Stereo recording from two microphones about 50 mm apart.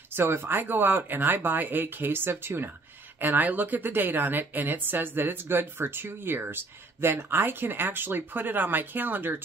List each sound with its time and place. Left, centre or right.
0.1 s a woman's voice: right